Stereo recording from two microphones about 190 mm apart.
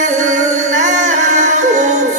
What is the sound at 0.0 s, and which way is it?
Music, 40° right (ahead or behind).